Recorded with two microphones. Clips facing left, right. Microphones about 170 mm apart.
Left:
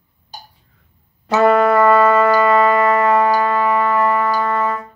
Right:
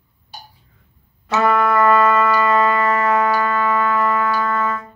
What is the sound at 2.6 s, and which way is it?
Music, 30° left (ahead or behind).